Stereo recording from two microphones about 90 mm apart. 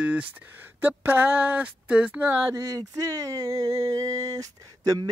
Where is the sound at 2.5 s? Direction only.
40° right (ahead or behind).